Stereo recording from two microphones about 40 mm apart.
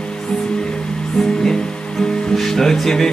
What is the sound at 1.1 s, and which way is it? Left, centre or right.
Music, centre.